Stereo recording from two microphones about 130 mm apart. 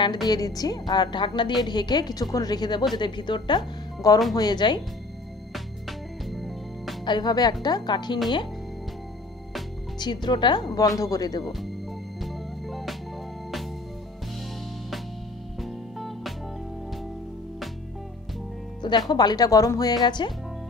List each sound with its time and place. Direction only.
0.0 s a woman's voice: 35° left (ahead or behind)
5.5 s music: centre (ahead or behind)
7.1 s a woman's voice: 35° left (ahead or behind)
9.9 s a woman's voice: 35° left (ahead or behind)
12.2 s music: centre (ahead or behind)
15.6 s music: centre (ahead or behind)
18.8 s a woman's voice: 35° left (ahead or behind)